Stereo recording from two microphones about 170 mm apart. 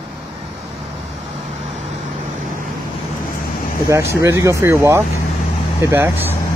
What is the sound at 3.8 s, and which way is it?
Speech, 15° right (ahead or behind).